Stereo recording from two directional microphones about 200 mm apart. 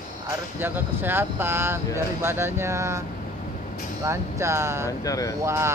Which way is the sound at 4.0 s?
15° right (ahead or behind).